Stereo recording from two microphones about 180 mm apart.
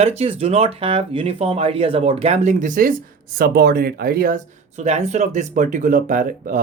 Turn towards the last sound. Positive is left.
turn(degrees=-45)  # may be behind; listen again after turning